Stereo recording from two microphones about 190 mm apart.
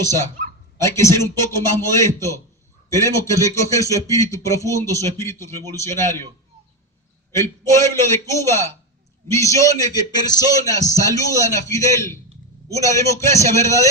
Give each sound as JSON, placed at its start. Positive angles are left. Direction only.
{"t": 0.8, "sound": "a man's voice", "side_deg": 15}
{"t": 7.3, "sound": "a man's voice", "side_deg": 15}